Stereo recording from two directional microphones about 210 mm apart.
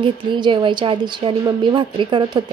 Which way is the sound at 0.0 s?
25° right (ahead or behind).